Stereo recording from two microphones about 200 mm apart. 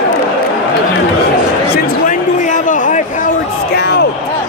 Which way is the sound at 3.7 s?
55° left (ahead or behind).